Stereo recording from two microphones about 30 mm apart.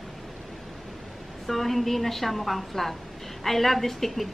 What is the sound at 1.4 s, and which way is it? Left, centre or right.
A woman's voice, centre.